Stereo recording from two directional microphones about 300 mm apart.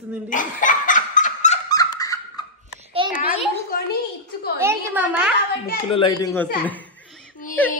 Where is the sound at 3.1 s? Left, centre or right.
Left.